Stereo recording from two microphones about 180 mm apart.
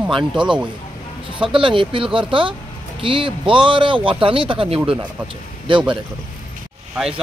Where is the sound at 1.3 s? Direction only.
30° right (ahead or behind).